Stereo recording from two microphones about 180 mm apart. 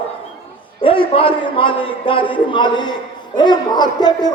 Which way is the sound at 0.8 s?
30° left (ahead or behind).